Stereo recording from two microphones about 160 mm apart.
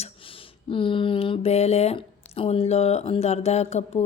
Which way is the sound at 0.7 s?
35° left (ahead or behind).